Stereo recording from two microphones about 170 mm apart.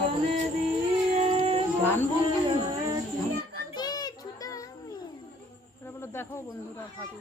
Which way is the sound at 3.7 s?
25° left (ahead or behind).